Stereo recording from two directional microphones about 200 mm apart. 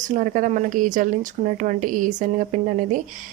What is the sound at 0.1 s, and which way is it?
Speech, 40° right (ahead or behind).